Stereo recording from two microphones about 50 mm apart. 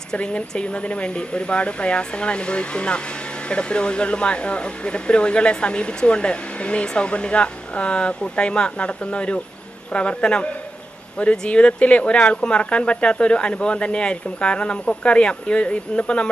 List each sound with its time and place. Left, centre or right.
0.1 s speech: centre